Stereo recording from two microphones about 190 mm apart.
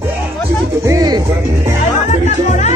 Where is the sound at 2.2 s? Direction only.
40° left (ahead or behind).